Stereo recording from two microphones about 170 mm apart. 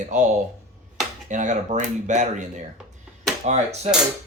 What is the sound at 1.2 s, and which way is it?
Speech, 45° right (ahead or behind).